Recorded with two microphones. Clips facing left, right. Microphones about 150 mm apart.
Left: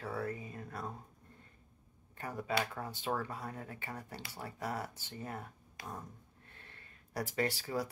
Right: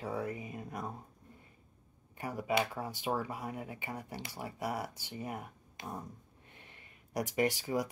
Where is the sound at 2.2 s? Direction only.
10° right (ahead or behind).